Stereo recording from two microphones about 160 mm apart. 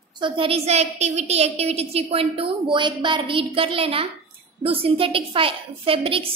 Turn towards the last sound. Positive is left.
turn(degrees=-35)  # may be behind; listen again after turning